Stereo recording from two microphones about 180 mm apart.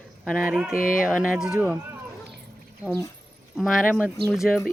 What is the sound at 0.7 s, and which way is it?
Speech, 50° left (ahead or behind).